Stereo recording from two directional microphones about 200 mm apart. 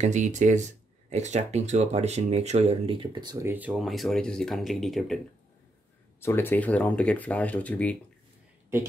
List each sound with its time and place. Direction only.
0.0 s speech: 35° right (ahead or behind); by 5.2 s centre (ahead or behind)
6.2 s speech: 10° left (ahead or behind)